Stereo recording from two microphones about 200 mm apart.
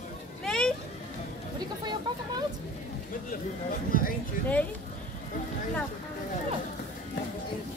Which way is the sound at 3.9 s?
45° left (ahead or behind).